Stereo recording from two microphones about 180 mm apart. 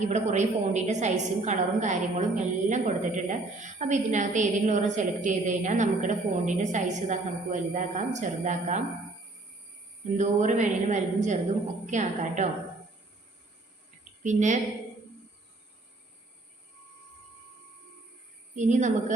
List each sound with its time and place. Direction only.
0.0 s a woman's voice: 40° right (ahead or behind)
10.2 s a woman's voice: 40° right (ahead or behind)
14.3 s a woman's voice: 40° right (ahead or behind)
18.5 s a woman's voice: 40° right (ahead or behind)